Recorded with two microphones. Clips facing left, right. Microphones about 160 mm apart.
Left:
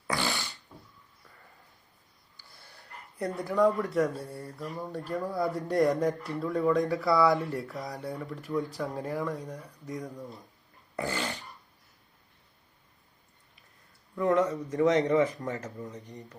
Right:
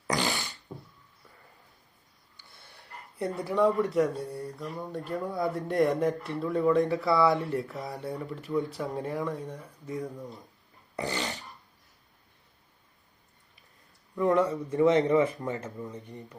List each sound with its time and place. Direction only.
0.1 s beatboxing: 20° right (ahead or behind)
2.6 s a sound: centre (ahead or behind)
3.5 s speech: centre (ahead or behind)
14.2 s speech: centre (ahead or behind)
14.7 s speech: 30° right (ahead or behind)